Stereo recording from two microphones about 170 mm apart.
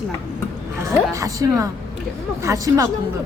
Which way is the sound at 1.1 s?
20° right (ahead or behind).